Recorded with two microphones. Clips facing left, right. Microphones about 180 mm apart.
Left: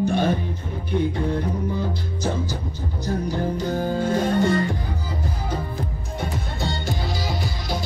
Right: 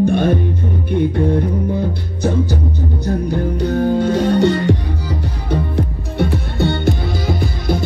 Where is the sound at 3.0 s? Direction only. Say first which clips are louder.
Right 4 dB; 60° right (ahead or behind).